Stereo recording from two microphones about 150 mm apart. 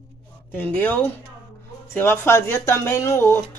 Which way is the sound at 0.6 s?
10° left (ahead or behind).